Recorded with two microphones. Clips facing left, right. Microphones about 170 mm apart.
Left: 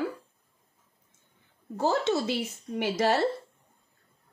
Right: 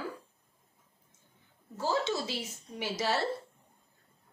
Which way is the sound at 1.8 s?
60° left (ahead or behind).